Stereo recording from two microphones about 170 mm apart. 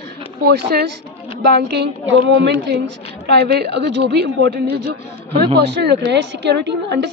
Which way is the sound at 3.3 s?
75° right (ahead or behind).